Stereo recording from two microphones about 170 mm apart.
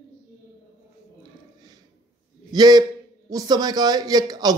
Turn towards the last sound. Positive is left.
turn(degrees=-25)  # may be behind; listen again after turning